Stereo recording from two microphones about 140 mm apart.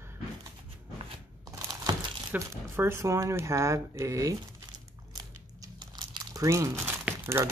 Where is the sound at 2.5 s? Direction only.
20° right (ahead or behind); by 6.2 s 35° right (ahead or behind).